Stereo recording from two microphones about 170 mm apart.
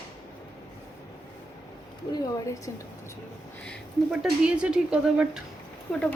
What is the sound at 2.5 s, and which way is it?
Speech, 20° left (ahead or behind).